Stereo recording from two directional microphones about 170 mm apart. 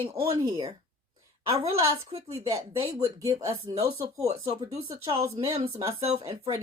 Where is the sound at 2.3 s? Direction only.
20° right (ahead or behind).